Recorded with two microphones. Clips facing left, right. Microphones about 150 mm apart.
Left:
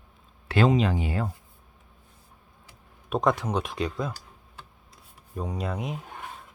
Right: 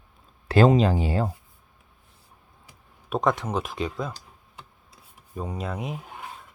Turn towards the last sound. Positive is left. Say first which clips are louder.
# even
turn(degrees=0)  # may be behind; listen again after turning